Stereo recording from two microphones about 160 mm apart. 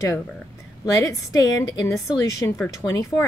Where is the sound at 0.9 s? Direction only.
20° left (ahead or behind).